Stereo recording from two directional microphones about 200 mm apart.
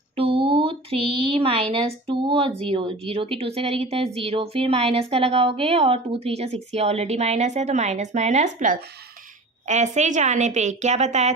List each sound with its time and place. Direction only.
0.1 s a woman's voice: 30° right (ahead or behind)